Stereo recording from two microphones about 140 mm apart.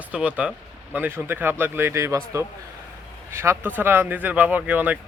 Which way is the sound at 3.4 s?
15° right (ahead or behind).